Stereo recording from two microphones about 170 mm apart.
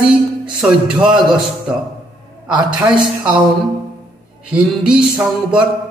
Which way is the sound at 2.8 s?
5° right (ahead or behind).